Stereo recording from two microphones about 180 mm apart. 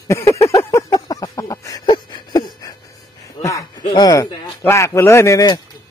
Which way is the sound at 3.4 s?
20° left (ahead or behind).